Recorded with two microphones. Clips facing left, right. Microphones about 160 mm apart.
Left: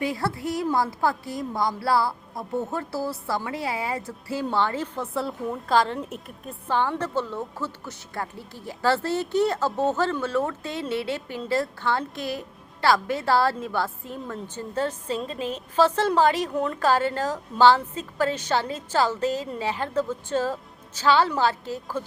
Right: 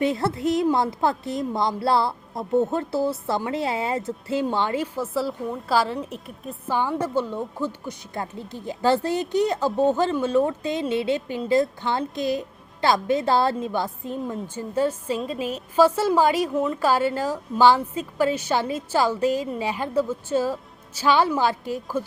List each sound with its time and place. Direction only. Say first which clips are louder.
0.0 s a woman's voice: right 5 dB; 25° right (ahead or behind)